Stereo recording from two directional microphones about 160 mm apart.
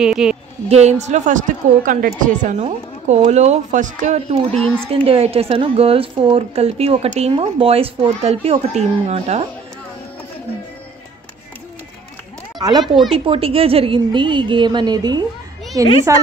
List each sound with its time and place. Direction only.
0.0 s speech: 5° right (ahead or behind)
0.7 s a woman's voice: 45° right (ahead or behind)
4.5 s speech: 5° left (ahead or behind)
4.9 s a woman's voice: 35° right (ahead or behind)
12.5 s speech: 25° right (ahead or behind)
12.8 s speech: centre (ahead or behind)
13.1 s a woman's voice: 35° right (ahead or behind)